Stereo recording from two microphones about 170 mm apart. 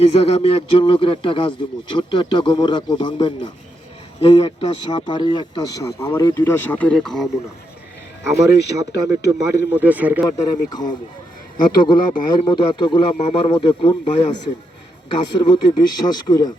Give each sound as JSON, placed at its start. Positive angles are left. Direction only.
{"t": 0.0, "sound": "speech", "side_deg": 40}
{"t": 4.2, "sound": "speech", "side_deg": 35}
{"t": 4.9, "sound": "speech", "side_deg": 25}
{"t": 8.2, "sound": "speech", "side_deg": -15}
{"t": 10.2, "sound": "speech", "side_deg": 25}
{"t": 15.4, "sound": "speech", "side_deg": 25}